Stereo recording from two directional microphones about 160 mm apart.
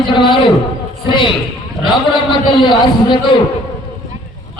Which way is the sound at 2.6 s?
30° left (ahead or behind).